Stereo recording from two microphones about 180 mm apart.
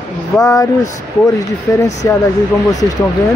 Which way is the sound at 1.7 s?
15° left (ahead or behind).